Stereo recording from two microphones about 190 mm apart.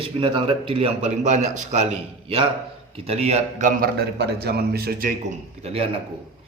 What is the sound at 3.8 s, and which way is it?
A man's voice, 55° right (ahead or behind).